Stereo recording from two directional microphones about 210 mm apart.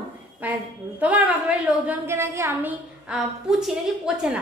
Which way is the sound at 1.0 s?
5° right (ahead or behind).